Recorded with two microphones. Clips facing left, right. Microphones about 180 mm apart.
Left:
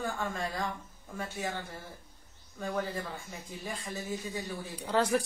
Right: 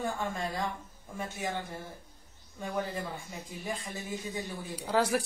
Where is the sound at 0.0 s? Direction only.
20° right (ahead or behind).